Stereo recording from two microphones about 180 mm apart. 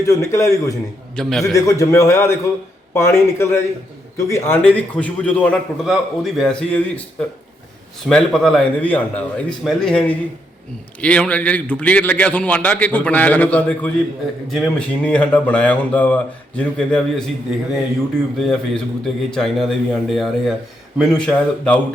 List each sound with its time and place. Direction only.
0.0 s a man's voice: 15° left (ahead or behind)
1.1 s a man's voice: centre (ahead or behind)
1.5 s a man's voice: 15° left (ahead or behind)
8.0 s a man's voice: 5° left (ahead or behind)
18.3 s a man's voice: centre (ahead or behind)